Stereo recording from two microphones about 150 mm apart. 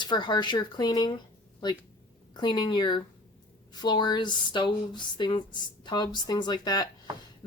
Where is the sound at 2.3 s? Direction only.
30° left (ahead or behind).